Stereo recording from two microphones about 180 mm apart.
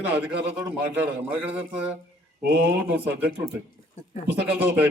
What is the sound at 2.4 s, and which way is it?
Speech, 60° right (ahead or behind).